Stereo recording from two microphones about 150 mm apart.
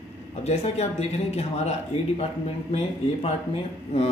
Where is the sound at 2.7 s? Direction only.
45° left (ahead or behind).